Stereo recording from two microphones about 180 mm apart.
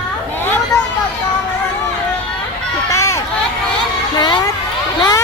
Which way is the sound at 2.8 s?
15° left (ahead or behind).